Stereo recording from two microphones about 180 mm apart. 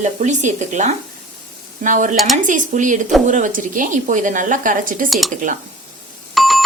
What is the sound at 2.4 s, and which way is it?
A woman's voice, 45° right (ahead or behind).